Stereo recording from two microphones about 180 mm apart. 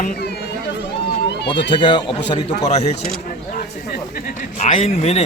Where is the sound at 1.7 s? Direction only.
25° left (ahead or behind).